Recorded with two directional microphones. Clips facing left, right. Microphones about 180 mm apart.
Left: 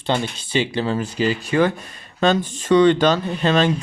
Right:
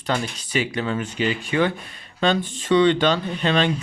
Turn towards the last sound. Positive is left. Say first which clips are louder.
# left 3 dB
turn(degrees=40)  # may be behind; listen again after turning